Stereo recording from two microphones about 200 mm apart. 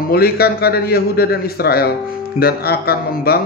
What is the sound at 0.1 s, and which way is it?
A man's voice, 50° left (ahead or behind).